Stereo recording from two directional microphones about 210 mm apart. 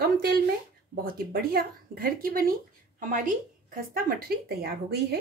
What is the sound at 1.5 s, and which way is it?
A woman's voice, 45° right (ahead or behind).